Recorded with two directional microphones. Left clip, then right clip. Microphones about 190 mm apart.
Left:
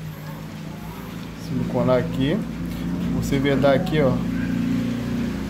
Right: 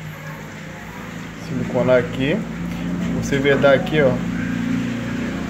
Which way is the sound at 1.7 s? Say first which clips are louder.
Right 4 dB; centre (ahead or behind).